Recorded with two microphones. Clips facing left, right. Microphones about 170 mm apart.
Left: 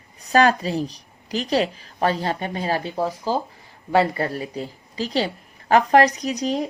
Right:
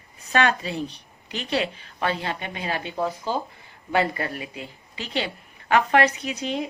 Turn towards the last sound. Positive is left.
turn(degrees=40)  # may be behind; listen again after turning